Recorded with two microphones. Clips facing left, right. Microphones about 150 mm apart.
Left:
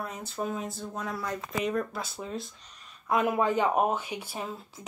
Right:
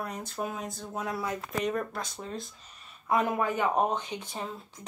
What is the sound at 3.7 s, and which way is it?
Speech, 5° left (ahead or behind).